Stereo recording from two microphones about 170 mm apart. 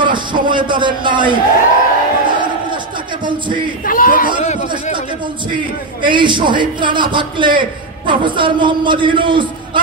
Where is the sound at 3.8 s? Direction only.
55° left (ahead or behind).